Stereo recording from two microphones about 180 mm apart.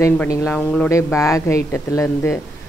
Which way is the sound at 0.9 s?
15° left (ahead or behind).